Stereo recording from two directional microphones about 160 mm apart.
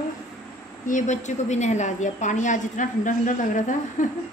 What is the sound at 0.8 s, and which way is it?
A woman's voice, 50° left (ahead or behind).